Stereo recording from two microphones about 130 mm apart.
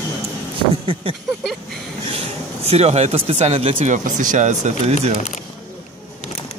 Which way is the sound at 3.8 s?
75° right (ahead or behind).